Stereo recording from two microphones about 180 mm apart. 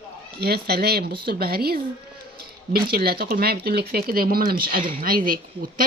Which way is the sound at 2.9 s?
60° right (ahead or behind).